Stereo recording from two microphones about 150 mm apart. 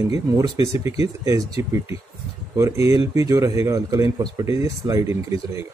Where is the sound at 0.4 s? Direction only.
20° right (ahead or behind).